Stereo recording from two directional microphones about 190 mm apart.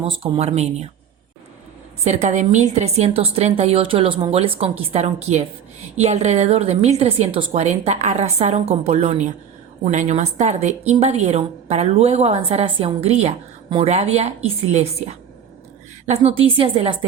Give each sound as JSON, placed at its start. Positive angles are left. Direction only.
{"t": 0.0, "sound": "a woman's voice", "side_deg": -30}
{"t": 2.0, "sound": "a woman's voice", "side_deg": -35}